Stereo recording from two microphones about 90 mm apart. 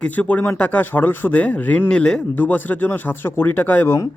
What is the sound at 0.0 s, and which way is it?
Speech, 15° left (ahead or behind).